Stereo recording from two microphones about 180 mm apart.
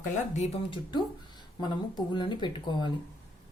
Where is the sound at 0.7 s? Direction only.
25° left (ahead or behind).